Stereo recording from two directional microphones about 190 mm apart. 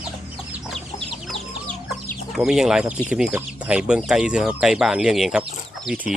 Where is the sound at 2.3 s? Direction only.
Centre (ahead or behind).